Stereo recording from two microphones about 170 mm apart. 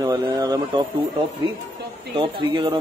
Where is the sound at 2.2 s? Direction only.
25° right (ahead or behind).